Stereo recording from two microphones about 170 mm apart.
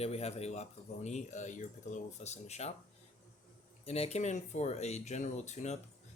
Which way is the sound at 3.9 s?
40° left (ahead or behind).